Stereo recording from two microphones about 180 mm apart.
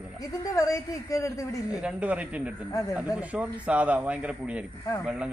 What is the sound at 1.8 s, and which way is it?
A man's voice, 5° right (ahead or behind).